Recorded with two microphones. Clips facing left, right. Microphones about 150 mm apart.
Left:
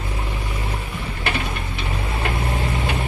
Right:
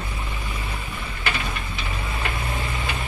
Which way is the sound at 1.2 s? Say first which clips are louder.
Left 3 dB; 60° left (ahead or behind).